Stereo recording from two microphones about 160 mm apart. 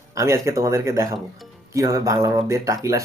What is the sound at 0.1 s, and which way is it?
Speech, 20° right (ahead or behind).